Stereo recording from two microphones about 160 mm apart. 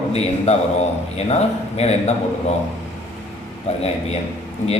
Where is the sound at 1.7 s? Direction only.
40° left (ahead or behind).